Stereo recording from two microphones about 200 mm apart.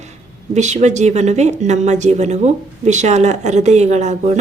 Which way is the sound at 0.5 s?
35° right (ahead or behind).